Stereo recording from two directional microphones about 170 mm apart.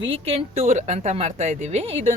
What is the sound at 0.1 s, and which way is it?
A woman's voice, 35° right (ahead or behind).